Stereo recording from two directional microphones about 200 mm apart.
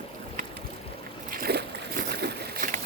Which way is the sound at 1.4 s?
50° right (ahead or behind).